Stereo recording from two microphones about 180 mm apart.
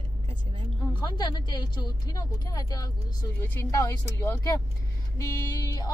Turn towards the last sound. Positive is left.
turn(degrees=20)  # may be behind; listen again after turning